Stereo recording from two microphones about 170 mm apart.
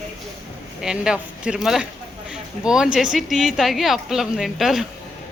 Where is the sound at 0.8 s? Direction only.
5° right (ahead or behind).